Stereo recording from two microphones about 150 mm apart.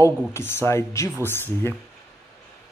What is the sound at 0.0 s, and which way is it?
Speech, 15° left (ahead or behind).